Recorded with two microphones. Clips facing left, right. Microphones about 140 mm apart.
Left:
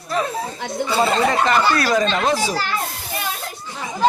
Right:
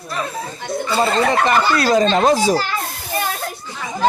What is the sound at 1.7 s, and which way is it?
Speech, 35° right (ahead or behind).